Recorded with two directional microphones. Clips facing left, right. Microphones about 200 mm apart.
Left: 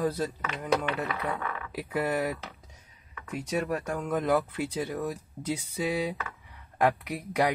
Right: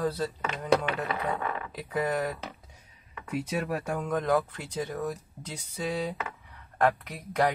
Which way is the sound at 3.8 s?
10° right (ahead or behind).